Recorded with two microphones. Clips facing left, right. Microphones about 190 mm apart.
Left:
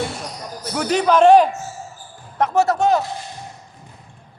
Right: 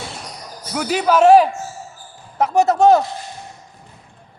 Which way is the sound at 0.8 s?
5° right (ahead or behind).